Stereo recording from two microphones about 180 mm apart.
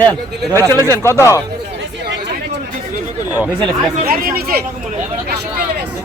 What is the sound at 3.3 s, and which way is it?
Speech, 5° right (ahead or behind).